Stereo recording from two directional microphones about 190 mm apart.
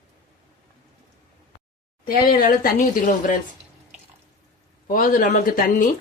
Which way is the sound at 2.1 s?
50° left (ahead or behind).